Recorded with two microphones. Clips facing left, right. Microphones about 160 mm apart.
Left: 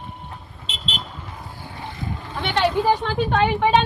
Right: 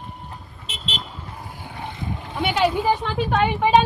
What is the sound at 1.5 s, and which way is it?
Vehicle, 20° right (ahead or behind).